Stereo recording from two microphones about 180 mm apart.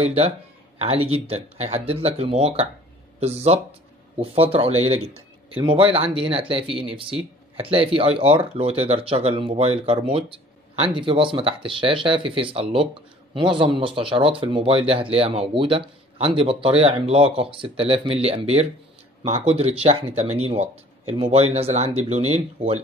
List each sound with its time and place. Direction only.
0.0 s speech: 35° right (ahead or behind)